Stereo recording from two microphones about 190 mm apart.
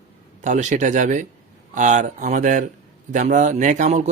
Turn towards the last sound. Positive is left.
turn(degrees=-40)  # may be behind; listen again after turning